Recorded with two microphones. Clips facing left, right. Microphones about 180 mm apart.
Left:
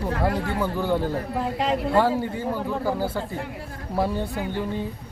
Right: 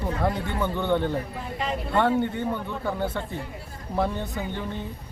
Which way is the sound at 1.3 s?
90° left.